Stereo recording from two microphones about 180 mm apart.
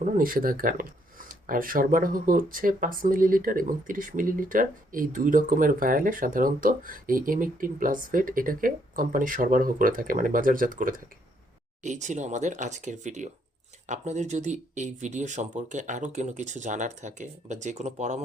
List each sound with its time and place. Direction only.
0.0 s speech: 50° right (ahead or behind)